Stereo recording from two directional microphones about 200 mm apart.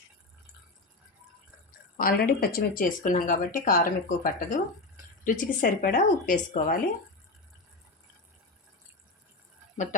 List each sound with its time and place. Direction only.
2.0 s a woman's voice: 45° left (ahead or behind)